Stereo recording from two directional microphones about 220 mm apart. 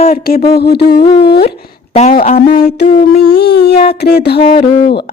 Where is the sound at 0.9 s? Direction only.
20° left (ahead or behind).